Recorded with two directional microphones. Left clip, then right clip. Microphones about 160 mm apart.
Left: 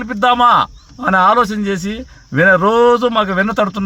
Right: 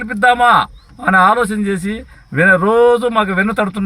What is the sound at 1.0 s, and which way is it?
Speech, 30° left (ahead or behind).